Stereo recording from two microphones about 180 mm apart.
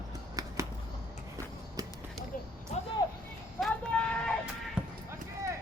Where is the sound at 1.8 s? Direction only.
20° right (ahead or behind).